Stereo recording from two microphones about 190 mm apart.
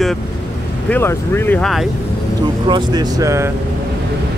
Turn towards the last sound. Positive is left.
turn(degrees=-15)  # may be behind; listen again after turning